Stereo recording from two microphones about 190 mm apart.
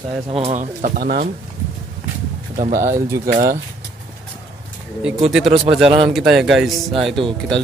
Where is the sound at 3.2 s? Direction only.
45° right (ahead or behind).